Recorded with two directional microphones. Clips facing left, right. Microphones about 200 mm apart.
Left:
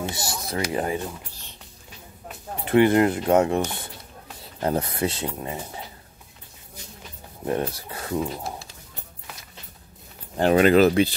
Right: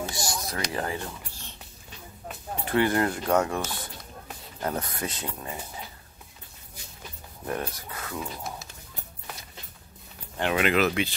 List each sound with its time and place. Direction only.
0.1 s speech: 5° left (ahead or behind)
0.7 s speech: 20° left (ahead or behind)
2.6 s speech: 20° left (ahead or behind)
7.4 s speech: 25° left (ahead or behind)
10.3 s speech: 40° left (ahead or behind)